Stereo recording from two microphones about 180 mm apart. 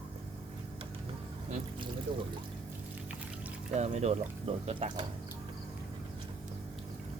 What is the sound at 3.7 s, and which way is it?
Speech, 40° right (ahead or behind).